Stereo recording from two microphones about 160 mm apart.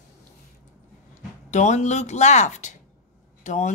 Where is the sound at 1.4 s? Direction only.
45° left (ahead or behind).